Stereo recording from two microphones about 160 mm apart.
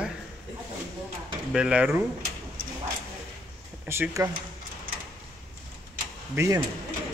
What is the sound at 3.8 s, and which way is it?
Speech, 15° right (ahead or behind).